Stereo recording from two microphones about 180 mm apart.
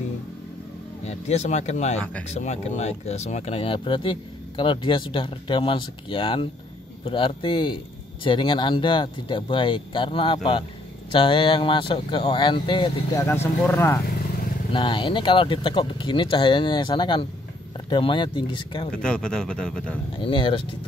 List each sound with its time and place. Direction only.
1.0 s speech: 40° left (ahead or behind)
13.2 s speech: 15° left (ahead or behind)
14.7 s speech: 25° left (ahead or behind)
18.9 s speech: 5° left (ahead or behind)
20.2 s speech: 25° left (ahead or behind)